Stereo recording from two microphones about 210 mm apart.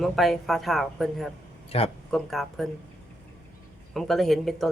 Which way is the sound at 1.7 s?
30° left (ahead or behind).